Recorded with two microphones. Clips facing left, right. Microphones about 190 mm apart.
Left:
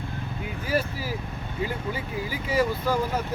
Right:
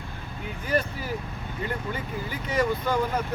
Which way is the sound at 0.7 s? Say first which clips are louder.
Even; 5° left (ahead or behind).